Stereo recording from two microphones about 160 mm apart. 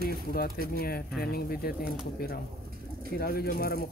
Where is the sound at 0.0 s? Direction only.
70° left (ahead or behind).